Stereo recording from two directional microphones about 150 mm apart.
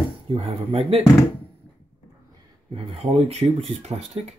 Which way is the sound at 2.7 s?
40° right (ahead or behind).